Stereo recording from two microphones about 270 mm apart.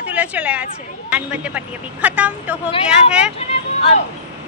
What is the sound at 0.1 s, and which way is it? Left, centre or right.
Speech, centre.